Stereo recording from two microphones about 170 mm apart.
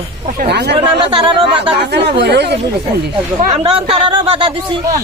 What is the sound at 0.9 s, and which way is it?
Speech, 30° right (ahead or behind).